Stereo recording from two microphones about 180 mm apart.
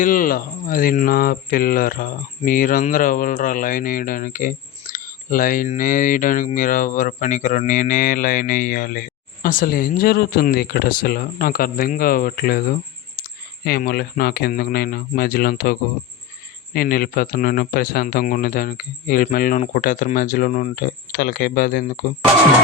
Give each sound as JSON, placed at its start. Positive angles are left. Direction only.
{"t": 0.0, "sound": "speech", "side_deg": 50}